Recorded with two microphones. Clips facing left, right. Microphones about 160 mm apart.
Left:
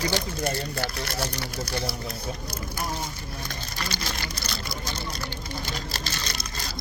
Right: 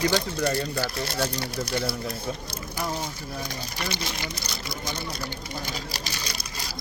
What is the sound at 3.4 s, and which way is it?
Sewing machine, 20° right (ahead or behind).